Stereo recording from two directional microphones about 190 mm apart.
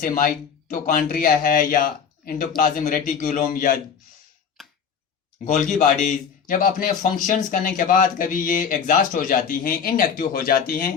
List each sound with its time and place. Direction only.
0.0 s a man's voice: 45° left (ahead or behind)
4.6 s a sound: centre (ahead or behind)
5.8 s a man's voice: 40° left (ahead or behind)